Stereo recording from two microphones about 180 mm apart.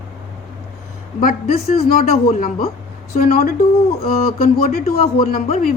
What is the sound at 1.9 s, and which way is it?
Speech, 55° left (ahead or behind).